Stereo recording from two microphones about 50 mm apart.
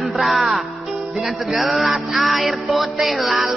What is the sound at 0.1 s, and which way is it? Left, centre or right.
Music, centre.